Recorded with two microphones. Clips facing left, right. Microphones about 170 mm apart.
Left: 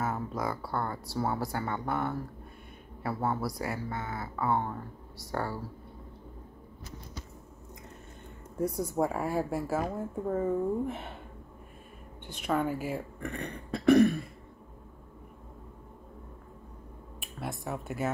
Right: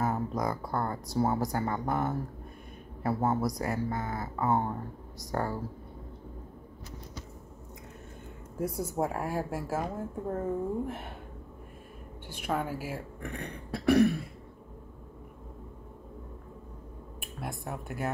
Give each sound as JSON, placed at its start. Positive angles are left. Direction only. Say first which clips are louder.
{"t": 0.0, "sound": "a sound", "louder": "right 2 dB", "side_deg": -20}
{"t": 1.2, "sound": "speech", "louder": "right 3 dB", "side_deg": -20}
{"t": 1.5, "sound": "speech", "louder": "right 2 dB", "side_deg": -35}
{"t": 3.1, "sound": "speech", "louder": "right 3 dB", "side_deg": -20}
{"t": 3.5, "sound": "speech", "louder": "right 3 dB", "side_deg": -40}
{"t": 4.4, "sound": "speech", "louder": "right 1 dB", "side_deg": -20}
{"t": 5.2, "sound": "speech", "louder": "right 2 dB", "side_deg": -35}
{"t": 8.9, "sound": "speech", "louder": "left 2 dB", "side_deg": 0}
{"t": 12.4, "sound": "speech", "louder": "left 3 dB", "side_deg": -5}
{"t": 17.4, "sound": "speech", "louder": "left 2 dB", "side_deg": 0}